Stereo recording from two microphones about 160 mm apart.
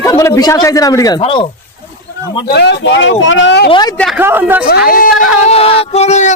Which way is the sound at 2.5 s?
85° left.